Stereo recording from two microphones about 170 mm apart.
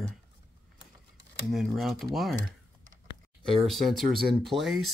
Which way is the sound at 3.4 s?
30° right (ahead or behind).